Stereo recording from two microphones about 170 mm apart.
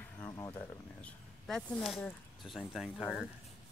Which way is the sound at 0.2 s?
20° left (ahead or behind).